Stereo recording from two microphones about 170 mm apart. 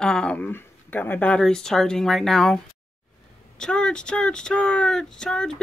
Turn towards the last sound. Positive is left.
turn(degrees=5)  # may be behind; listen again after turning